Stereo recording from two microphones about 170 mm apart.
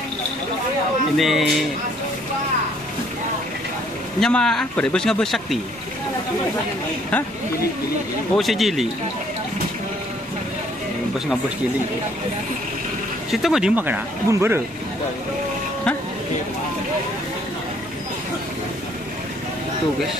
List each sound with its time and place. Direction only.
1.1 s speech: centre (ahead or behind)
4.2 s speech: 5° left (ahead or behind)
8.4 s speech: centre (ahead or behind)
13.3 s speech: centre (ahead or behind)